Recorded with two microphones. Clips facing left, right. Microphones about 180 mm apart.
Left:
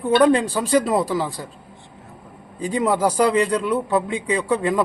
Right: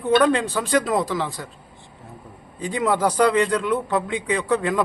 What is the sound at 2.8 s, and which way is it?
Speech, 10° left (ahead or behind).